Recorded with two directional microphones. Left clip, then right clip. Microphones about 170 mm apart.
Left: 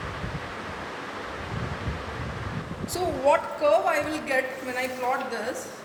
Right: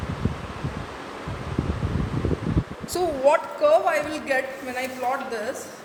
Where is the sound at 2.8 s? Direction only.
65° right (ahead or behind).